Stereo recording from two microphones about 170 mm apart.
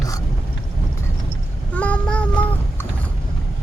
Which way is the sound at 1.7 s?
5° left (ahead or behind).